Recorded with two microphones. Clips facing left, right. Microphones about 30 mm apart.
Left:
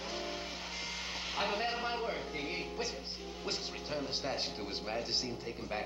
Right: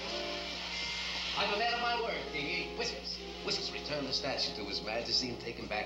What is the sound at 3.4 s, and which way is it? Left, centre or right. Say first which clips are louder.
Speech: right 2 dB; right.